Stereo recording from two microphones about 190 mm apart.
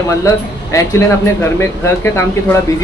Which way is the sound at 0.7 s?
15° left (ahead or behind).